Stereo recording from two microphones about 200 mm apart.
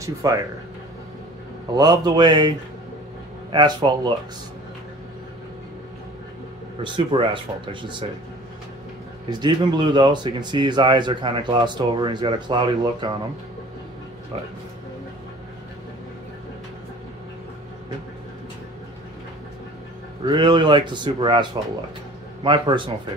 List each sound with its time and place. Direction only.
0.0 s speech: 15° right (ahead or behind)
1.8 s speech: 20° right (ahead or behind)
3.5 s speech: 20° right (ahead or behind)
6.8 s speech: 25° right (ahead or behind)
9.3 s speech: 20° right (ahead or behind)
20.2 s speech: 20° right (ahead or behind)